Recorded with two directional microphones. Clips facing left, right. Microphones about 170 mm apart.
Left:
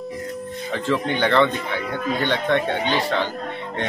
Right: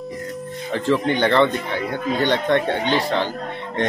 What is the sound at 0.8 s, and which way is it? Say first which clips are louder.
Speech: right 3 dB; 15° right (ahead or behind).